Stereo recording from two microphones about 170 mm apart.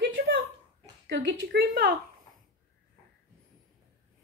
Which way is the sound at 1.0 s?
90° right.